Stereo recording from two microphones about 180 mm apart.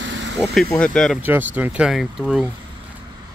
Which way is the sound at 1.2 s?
10° right (ahead or behind).